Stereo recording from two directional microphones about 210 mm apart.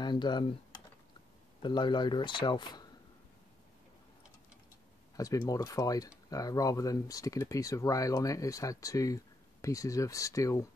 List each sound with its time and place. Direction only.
0.0 s speech: 20° left (ahead or behind)
1.6 s speech: 20° left (ahead or behind)
5.1 s speech: 15° left (ahead or behind)